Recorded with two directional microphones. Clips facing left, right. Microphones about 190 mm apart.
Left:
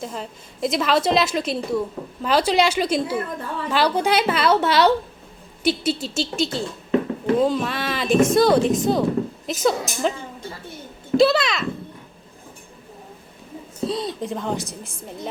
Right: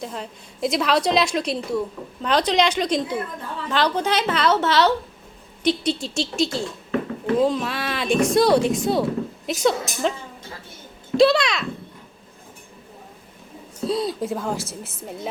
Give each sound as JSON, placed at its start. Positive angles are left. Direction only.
{"t": 0.0, "sound": "a woman's voice", "side_deg": 0}
{"t": 11.2, "sound": "a woman's voice", "side_deg": 0}
{"t": 13.8, "sound": "a woman's voice", "side_deg": 0}